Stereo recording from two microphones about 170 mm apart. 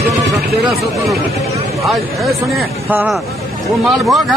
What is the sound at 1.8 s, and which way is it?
Speech, centre (ahead or behind).